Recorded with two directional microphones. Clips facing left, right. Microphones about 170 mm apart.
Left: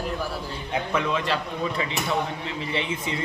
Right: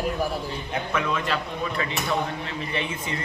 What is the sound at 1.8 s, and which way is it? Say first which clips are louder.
A man's voice: right 2 dB; 20° left (ahead or behind).